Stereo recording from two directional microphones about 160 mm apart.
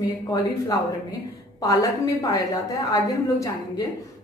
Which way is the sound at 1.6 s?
20° left (ahead or behind).